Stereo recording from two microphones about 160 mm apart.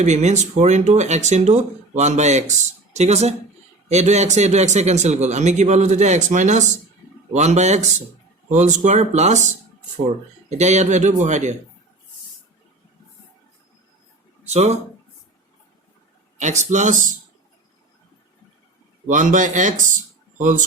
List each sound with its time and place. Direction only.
0.0 s a man's voice: 45° right (ahead or behind)
10.5 s a man's voice: 45° right (ahead or behind)
14.4 s speech: 45° right (ahead or behind)
16.4 s a man's voice: 45° right (ahead or behind)
19.0 s a man's voice: 55° right (ahead or behind)